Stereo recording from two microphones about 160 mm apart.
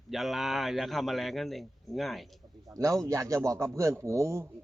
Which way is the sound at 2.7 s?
20° right (ahead or behind).